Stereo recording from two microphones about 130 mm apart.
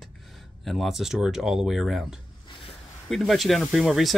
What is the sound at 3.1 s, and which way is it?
Speech, centre (ahead or behind).